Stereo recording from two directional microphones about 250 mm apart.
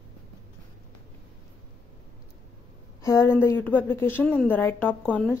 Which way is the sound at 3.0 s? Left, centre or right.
Centre.